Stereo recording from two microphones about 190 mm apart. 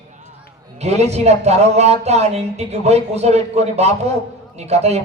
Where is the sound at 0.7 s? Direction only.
35° right (ahead or behind).